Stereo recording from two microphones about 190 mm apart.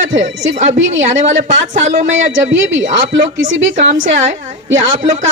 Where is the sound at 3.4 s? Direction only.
40° right (ahead or behind).